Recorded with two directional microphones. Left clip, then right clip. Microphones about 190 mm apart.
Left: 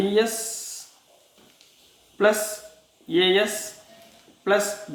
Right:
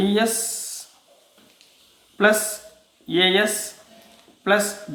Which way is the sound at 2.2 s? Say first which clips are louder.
Right 2 dB; 35° right (ahead or behind).